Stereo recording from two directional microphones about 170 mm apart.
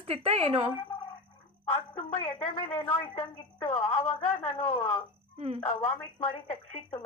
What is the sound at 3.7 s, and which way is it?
Speech, 35° left (ahead or behind).